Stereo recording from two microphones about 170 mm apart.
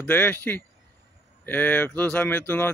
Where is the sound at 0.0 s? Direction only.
10° left (ahead or behind).